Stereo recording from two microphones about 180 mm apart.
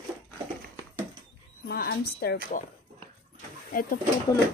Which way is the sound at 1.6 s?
60° left (ahead or behind).